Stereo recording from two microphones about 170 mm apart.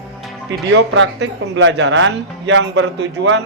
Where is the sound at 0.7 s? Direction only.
90° right.